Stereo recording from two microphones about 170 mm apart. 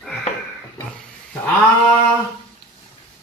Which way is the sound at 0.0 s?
5° left (ahead or behind).